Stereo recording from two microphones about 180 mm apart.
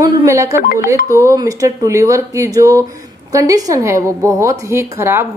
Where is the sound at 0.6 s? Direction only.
55° left (ahead or behind).